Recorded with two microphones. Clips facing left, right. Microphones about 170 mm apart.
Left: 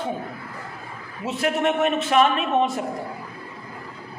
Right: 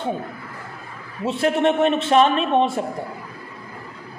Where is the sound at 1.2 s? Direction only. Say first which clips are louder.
Right 4 dB; 30° right (ahead or behind).